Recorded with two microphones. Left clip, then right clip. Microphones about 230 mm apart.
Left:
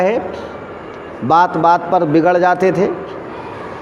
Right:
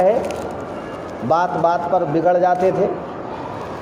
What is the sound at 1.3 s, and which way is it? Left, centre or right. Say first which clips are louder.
A man's voice: left 6 dB; left.